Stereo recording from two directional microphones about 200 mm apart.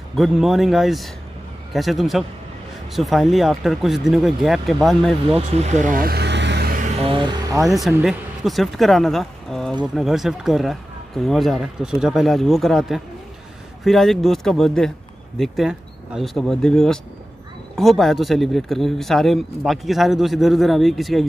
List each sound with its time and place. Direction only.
0.1 s speech: centre (ahead or behind)
5.5 s speech: 35° right (ahead or behind); by 6.9 s 50° right (ahead or behind)
7.0 s speech: 25° right (ahead or behind)
7.6 s speech: centre (ahead or behind)